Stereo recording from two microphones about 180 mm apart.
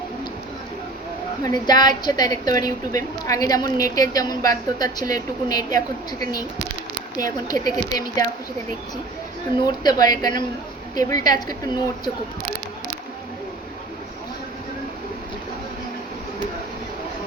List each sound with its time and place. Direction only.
1.5 s a woman's voice: 25° left (ahead or behind)
9.8 s a woman's voice: 20° left (ahead or behind)